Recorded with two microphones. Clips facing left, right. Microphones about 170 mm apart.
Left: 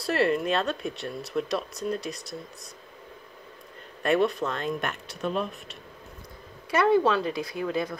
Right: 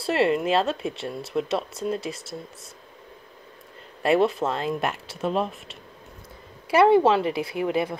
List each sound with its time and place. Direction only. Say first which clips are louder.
0.0 s speech: right 2 dB; 25° right (ahead or behind)
4.0 s speech: right 3 dB; 30° right (ahead or behind)